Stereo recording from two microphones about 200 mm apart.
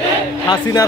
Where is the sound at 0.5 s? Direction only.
20° left (ahead or behind).